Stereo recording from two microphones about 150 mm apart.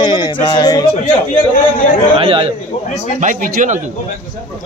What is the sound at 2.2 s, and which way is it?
Speech, 40° right (ahead or behind).